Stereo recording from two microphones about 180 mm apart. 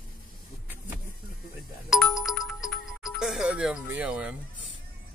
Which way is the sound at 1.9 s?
Centre (ahead or behind).